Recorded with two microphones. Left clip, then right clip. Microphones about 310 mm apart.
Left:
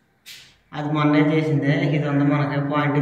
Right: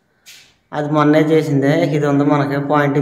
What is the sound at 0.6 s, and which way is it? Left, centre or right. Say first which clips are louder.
A man's voice: right 7 dB; centre.